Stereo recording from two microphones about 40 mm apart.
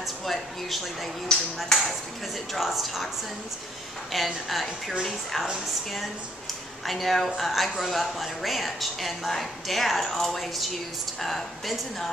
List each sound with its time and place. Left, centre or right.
0.0 s speech: centre
1.3 s speech: centre
2.5 s a woman's voice: centre
4.1 s a woman's voice: centre
6.9 s a woman's voice: centre